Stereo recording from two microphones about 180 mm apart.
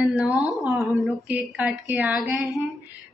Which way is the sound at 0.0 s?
5° right (ahead or behind).